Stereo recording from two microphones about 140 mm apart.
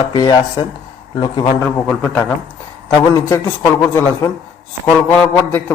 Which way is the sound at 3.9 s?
20° left (ahead or behind).